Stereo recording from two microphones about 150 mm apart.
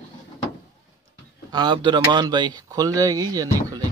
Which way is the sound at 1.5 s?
30° right (ahead or behind).